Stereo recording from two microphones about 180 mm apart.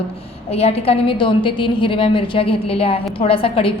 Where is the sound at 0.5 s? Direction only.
35° left (ahead or behind).